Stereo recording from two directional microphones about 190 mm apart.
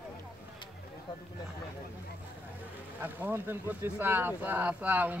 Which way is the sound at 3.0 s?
10° right (ahead or behind).